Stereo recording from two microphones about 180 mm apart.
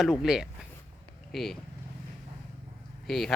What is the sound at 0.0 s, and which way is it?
Speech, 5° right (ahead or behind).